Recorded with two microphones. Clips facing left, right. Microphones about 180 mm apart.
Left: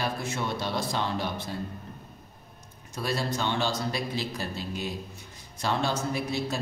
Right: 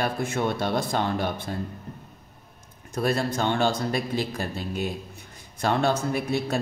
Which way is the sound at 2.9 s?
55° right (ahead or behind).